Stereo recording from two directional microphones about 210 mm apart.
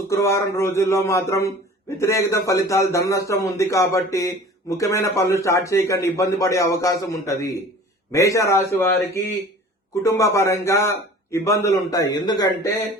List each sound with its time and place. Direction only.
0.1 s a man's voice: 15° left (ahead or behind)